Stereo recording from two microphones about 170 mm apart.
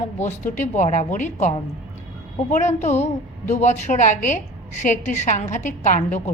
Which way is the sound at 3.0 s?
40° left (ahead or behind).